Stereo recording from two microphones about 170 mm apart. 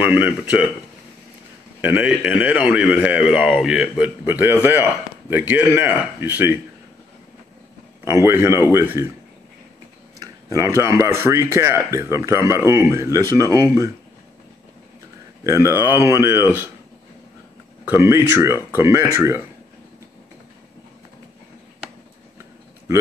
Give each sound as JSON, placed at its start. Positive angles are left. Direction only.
{"t": 0.0, "sound": "speech", "side_deg": -10}
{"t": 1.8, "sound": "speech", "side_deg": -10}
{"t": 8.0, "sound": "speech", "side_deg": -15}
{"t": 10.1, "sound": "speech", "side_deg": -20}
{"t": 15.4, "sound": "speech", "side_deg": -15}
{"t": 17.8, "sound": "speech", "side_deg": -15}